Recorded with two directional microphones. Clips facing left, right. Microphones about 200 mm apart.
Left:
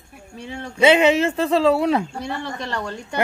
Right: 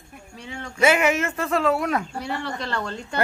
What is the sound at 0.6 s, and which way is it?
Speech, 30° left (ahead or behind).